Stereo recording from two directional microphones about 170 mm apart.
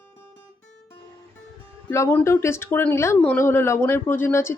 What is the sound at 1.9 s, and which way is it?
Speech, 15° left (ahead or behind).